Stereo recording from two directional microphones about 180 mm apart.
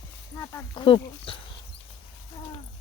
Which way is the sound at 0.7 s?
25° left (ahead or behind).